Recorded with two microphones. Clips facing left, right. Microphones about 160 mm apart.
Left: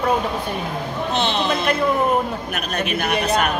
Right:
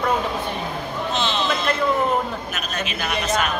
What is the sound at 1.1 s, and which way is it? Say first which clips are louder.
Speech: left 3 dB; 60° left (ahead or behind).